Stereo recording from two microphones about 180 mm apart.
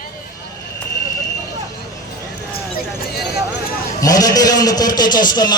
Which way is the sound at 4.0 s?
20° left (ahead or behind).